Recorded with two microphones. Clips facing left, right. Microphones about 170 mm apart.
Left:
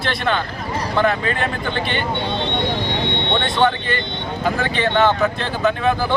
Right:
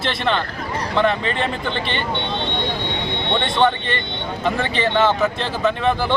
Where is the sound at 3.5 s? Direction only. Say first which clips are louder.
Even; 5° left (ahead or behind).